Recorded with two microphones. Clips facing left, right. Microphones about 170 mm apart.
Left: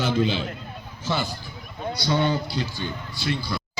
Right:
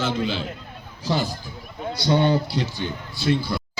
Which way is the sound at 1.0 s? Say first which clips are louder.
Right 3 dB; 35° right (ahead or behind).